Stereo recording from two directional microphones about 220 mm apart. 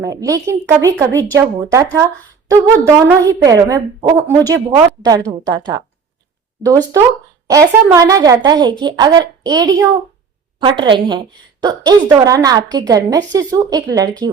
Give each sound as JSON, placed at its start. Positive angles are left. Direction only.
{"t": 0.0, "sound": "a woman's voice", "side_deg": -15}